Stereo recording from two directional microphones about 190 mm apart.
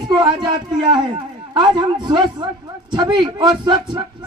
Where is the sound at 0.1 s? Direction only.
25° right (ahead or behind).